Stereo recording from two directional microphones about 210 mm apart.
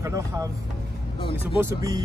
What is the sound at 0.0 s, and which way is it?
Speech, 15° right (ahead or behind).